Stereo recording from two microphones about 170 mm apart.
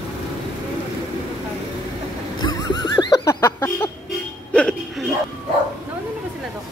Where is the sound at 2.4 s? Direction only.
25° left (ahead or behind).